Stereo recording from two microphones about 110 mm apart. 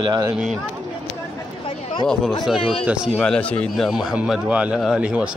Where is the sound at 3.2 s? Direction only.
10° left (ahead or behind).